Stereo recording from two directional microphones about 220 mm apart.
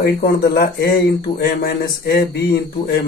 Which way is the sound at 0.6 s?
45° left (ahead or behind).